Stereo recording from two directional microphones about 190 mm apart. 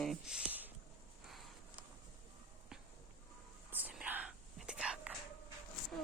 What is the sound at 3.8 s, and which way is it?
Whispering, 5° right (ahead or behind).